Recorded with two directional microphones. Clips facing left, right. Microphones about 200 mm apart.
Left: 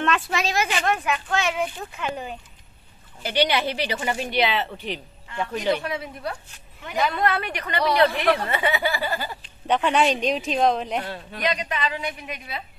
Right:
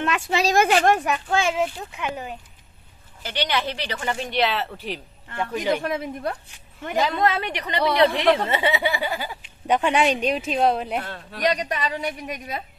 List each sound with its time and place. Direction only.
0.3 s a woman's voice: 35° right (ahead or behind)
0.6 s a woman's voice: 55° right (ahead or behind)
0.9 s a woman's voice: 35° right (ahead or behind)
2.0 s speech: 10° right (ahead or behind)
3.2 s speech: 10° left (ahead or behind); by 5.8 s 5° right (ahead or behind)
5.8 s a woman's voice: 50° right (ahead or behind)
7.1 s a woman's voice: 20° right (ahead or behind); by 11.1 s 5° right (ahead or behind)
11.4 s a woman's voice: 40° right (ahead or behind)